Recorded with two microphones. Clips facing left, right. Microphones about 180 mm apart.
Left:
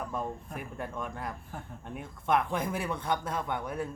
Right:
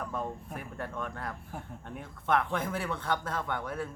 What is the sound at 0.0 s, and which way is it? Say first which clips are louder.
Speech: left 1 dB; 10° left (ahead or behind).